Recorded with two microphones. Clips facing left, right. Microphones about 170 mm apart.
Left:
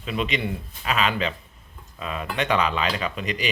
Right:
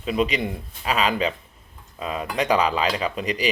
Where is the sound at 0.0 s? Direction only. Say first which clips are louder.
Right 4 dB; 35° right (ahead or behind).